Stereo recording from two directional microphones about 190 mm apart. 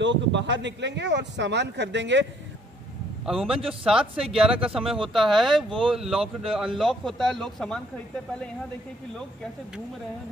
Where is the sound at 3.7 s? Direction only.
5° right (ahead or behind).